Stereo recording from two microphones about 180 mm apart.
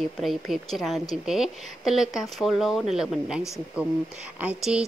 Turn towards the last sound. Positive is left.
turn(degrees=-5)  # may be behind; listen again after turning